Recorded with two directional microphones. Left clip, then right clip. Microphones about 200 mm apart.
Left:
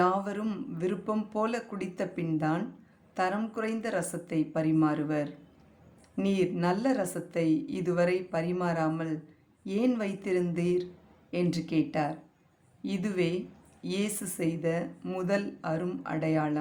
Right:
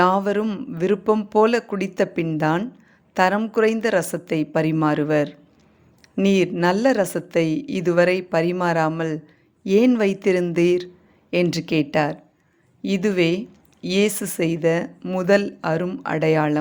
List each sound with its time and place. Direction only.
0.0 s speech: 40° right (ahead or behind)